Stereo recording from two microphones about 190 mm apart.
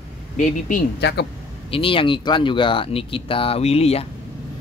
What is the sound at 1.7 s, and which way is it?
Speech, 30° left (ahead or behind).